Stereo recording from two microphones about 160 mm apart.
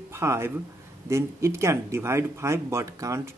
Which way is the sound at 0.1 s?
15° right (ahead or behind).